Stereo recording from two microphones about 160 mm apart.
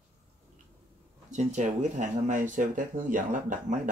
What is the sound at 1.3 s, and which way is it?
Speech, 45° right (ahead or behind).